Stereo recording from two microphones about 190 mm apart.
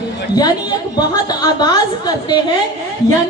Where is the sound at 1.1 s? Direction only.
20° left (ahead or behind).